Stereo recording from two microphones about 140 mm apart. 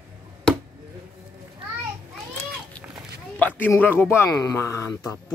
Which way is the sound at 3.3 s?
10° left (ahead or behind).